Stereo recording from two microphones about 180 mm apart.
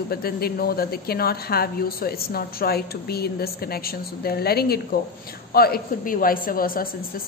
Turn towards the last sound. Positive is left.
turn(degrees=55)  # may be behind; listen again after turning